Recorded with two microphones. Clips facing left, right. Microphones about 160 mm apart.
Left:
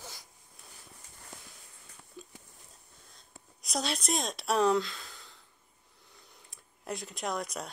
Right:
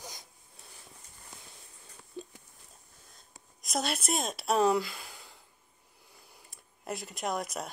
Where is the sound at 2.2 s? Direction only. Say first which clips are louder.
Right 7 dB; 30° right (ahead or behind).